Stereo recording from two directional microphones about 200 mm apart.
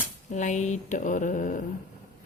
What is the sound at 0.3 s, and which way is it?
Speech, 35° left (ahead or behind).